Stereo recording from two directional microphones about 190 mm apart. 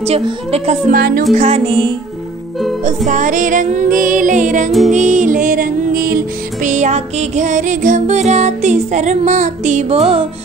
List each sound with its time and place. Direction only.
0.0 s music: 30° right (ahead or behind)
3.1 s music: 40° right (ahead or behind)